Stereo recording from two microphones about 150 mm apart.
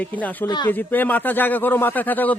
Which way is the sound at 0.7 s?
10° left (ahead or behind).